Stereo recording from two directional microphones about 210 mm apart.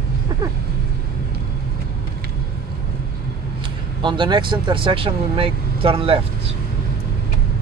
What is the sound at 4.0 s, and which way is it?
Speech, 20° right (ahead or behind).